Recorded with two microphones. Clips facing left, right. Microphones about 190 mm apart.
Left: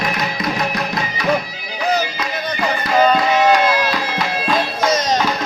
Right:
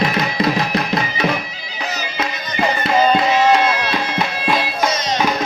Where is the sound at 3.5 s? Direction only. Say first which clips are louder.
Left 1 dB; 20° right (ahead or behind).